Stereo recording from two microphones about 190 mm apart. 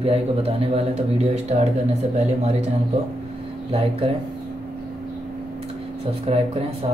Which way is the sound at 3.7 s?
30° right (ahead or behind).